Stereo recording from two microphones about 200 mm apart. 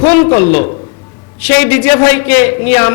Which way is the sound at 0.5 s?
35° left (ahead or behind).